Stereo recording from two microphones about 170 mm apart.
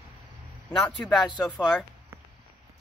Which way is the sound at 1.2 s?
25° left (ahead or behind).